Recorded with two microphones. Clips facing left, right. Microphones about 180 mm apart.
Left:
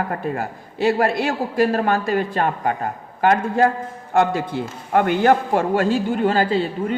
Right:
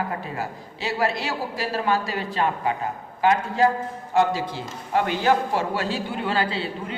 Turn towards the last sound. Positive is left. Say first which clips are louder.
# left 7 dB
turn(degrees=45)  # may be behind; listen again after turning